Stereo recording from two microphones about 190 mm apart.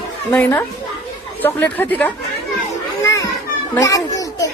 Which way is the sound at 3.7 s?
15° left (ahead or behind).